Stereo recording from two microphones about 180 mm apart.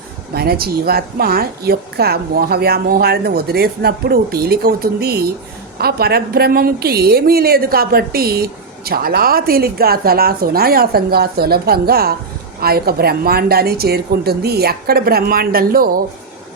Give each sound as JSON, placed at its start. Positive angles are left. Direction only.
{"t": 0.3, "sound": "a woman's voice", "side_deg": -60}